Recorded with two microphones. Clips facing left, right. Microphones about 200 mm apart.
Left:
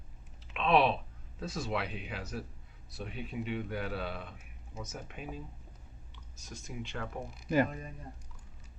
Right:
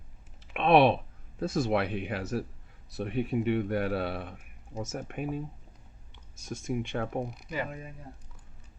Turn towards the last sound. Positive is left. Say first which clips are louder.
# left 7 dB
turn(degrees=45)  # may be behind; listen again after turning